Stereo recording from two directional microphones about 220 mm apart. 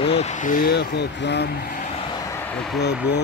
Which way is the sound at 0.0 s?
30° left (ahead or behind).